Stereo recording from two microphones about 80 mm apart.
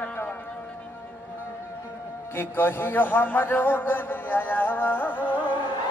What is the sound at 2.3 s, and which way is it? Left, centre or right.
A man's voice, left.